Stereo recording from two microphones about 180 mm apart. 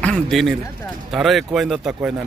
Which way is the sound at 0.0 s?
5° left (ahead or behind).